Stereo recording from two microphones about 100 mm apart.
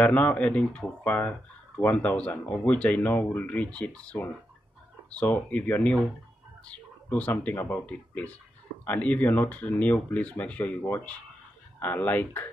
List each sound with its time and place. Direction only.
0.0 s speech: 15° left (ahead or behind)